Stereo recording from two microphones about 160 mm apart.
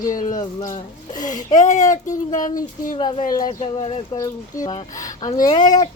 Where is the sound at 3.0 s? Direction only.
30° left (ahead or behind).